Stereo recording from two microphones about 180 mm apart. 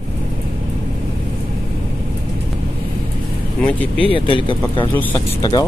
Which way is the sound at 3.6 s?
5° left (ahead or behind).